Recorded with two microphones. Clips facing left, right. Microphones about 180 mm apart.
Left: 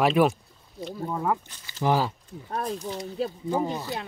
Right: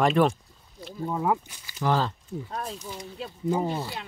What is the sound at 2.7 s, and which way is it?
Speech, 35° left (ahead or behind).